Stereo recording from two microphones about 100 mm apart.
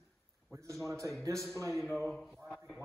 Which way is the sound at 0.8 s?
30° right (ahead or behind).